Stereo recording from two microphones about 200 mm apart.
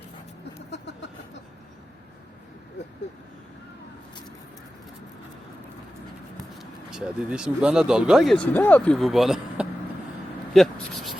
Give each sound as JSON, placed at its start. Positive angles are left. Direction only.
{"t": 0.7, "sound": "vehicle", "side_deg": 60}
{"t": 6.6, "sound": "speech", "side_deg": -5}
{"t": 10.5, "sound": "a sound", "side_deg": 0}